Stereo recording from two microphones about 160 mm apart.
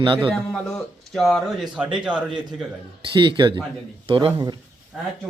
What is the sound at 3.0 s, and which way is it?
Speech, 30° right (ahead or behind).